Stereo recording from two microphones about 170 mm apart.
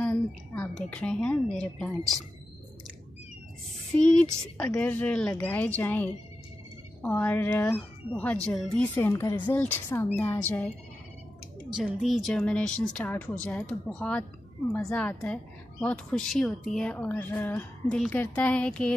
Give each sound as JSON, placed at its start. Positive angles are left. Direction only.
{"t": 0.0, "sound": "a woman's voice", "side_deg": 5}
{"t": 3.9, "sound": "speech", "side_deg": 5}
{"t": 11.7, "sound": "a woman's voice", "side_deg": 0}